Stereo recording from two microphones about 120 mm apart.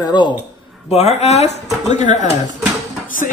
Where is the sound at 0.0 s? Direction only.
40° left (ahead or behind).